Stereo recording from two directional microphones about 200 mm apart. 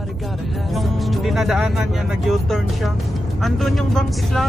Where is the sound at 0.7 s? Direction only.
Centre (ahead or behind).